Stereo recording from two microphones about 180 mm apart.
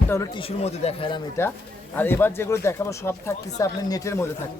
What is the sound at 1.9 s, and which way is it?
Speech, 10° left (ahead or behind).